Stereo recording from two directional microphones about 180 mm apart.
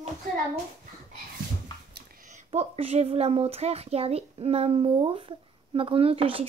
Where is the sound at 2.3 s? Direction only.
35° right (ahead or behind).